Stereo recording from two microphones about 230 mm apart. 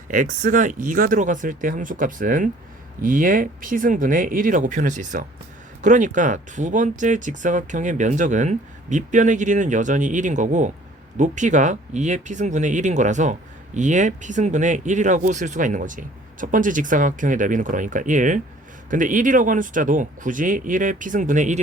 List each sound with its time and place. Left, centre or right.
0.1 s speech: right